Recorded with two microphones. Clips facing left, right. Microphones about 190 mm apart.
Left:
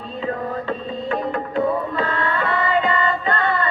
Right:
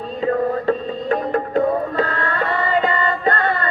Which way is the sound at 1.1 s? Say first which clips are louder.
Right 4 dB; 40° right (ahead or behind).